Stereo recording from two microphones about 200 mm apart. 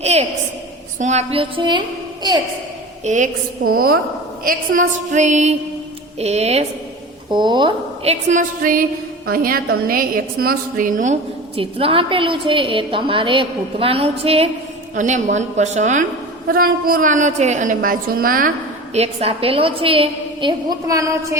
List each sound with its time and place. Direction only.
0.0 s a sound: 30° right (ahead or behind)
0.9 s a woman's voice: 35° right (ahead or behind)
3.0 s a woman's voice: 35° right (ahead or behind)
8.3 s a woman's voice: 40° right (ahead or behind)
18.9 s a woman's voice: 30° right (ahead or behind); by 21.3 s 15° right (ahead or behind)